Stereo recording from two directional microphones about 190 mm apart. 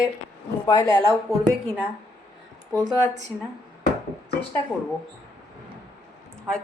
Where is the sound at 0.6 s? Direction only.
20° left (ahead or behind).